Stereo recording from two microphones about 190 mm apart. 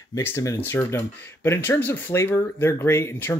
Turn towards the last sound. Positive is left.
turn(degrees=15)  # may be behind; listen again after turning